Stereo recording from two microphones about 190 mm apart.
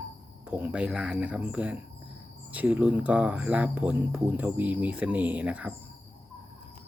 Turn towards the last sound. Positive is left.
turn(degrees=-5)  # may be behind; listen again after turning